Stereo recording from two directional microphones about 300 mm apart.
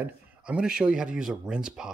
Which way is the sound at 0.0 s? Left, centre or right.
Centre.